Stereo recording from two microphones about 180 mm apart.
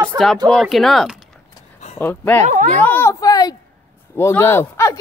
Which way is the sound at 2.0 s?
10° left (ahead or behind).